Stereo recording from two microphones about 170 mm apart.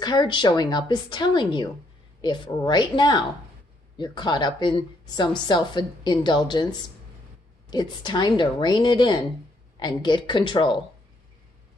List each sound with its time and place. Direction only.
0.0 s a woman's voice: 25° left (ahead or behind)